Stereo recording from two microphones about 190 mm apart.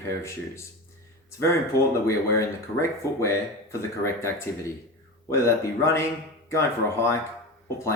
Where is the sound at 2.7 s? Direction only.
15° left (ahead or behind).